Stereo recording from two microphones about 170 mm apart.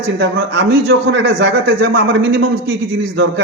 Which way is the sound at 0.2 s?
80° right.